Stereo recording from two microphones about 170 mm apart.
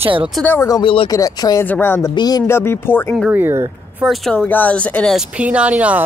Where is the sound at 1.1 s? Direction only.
20° left (ahead or behind).